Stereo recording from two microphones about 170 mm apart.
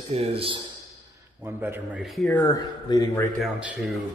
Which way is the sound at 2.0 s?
Centre (ahead or behind).